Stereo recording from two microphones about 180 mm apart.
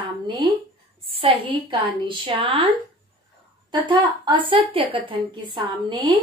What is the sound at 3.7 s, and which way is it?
A woman's voice, 25° right (ahead or behind).